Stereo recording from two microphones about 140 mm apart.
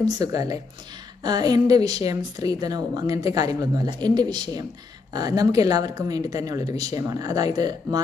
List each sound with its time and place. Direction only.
0.0 s speech: 25° right (ahead or behind)